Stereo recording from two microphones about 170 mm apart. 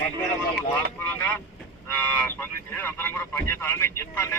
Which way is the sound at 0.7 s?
10° left (ahead or behind).